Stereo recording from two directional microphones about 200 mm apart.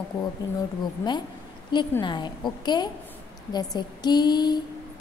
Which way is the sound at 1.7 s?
20° left (ahead or behind).